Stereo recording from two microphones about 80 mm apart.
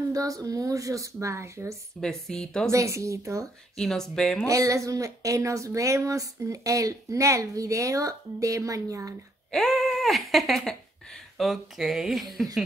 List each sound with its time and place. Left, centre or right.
0.1 s speech: right
2.0 s a woman's voice: centre
2.7 s a woman's voice: right
3.7 s a woman's voice: centre
4.5 s speech: right
9.5 s speech: centre